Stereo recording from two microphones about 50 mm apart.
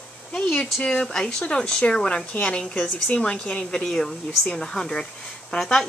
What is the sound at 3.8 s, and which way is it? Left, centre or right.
Speech, centre.